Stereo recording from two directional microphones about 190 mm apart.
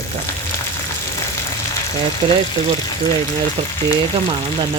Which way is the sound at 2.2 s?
25° right (ahead or behind).